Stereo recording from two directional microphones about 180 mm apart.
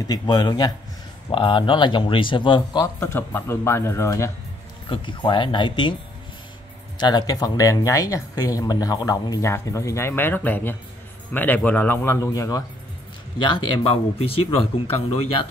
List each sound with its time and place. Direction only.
0.0 s speech: 20° left (ahead or behind)
3.0 s speech: 15° left (ahead or behind)
4.8 s speech: 25° left (ahead or behind)
7.0 s speech: 25° left (ahead or behind)